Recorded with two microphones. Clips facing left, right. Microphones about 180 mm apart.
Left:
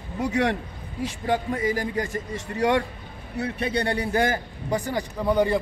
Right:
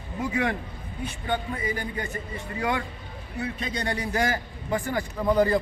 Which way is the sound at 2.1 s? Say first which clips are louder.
Left 4 dB; 80° left.